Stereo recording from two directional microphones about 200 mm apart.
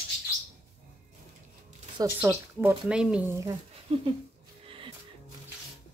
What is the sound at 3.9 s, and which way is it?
Speech, 30° right (ahead or behind).